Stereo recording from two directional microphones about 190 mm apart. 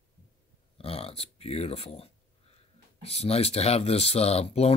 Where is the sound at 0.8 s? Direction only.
30° left (ahead or behind).